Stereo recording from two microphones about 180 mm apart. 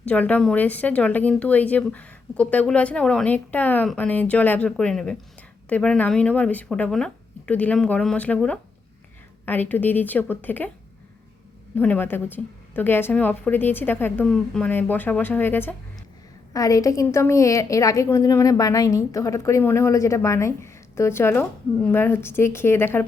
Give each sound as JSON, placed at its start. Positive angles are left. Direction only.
{"t": 0.0, "sound": "a woman's voice", "side_deg": 10}
{"t": 11.7, "sound": "a woman's voice", "side_deg": 10}